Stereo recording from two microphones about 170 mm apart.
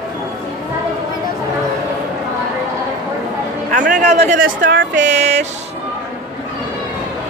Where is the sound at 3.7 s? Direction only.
50° right (ahead or behind).